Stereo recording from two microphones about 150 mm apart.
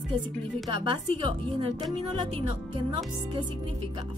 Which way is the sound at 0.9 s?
35° right (ahead or behind).